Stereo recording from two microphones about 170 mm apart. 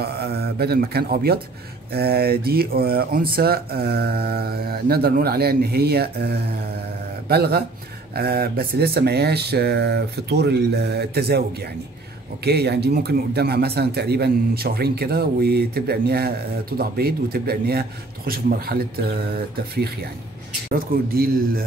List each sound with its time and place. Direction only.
0.0 s speech: 70° right (ahead or behind)
12.4 s speech: 75° right (ahead or behind)